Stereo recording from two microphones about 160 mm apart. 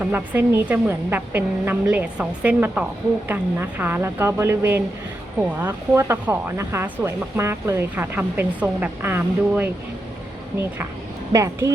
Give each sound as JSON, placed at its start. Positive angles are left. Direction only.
{"t": 0.0, "sound": "speech", "side_deg": -15}
{"t": 11.3, "sound": "speech", "side_deg": -20}